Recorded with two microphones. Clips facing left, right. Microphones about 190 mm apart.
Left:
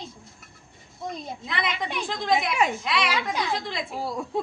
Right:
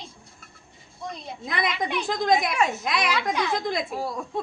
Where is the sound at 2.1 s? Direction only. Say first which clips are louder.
Right 2 dB; 45° right (ahead or behind).